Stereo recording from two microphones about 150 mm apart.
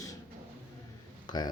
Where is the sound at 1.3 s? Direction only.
30° left (ahead or behind).